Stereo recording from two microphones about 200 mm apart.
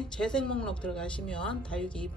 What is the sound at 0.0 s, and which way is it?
Speech, 5° left (ahead or behind).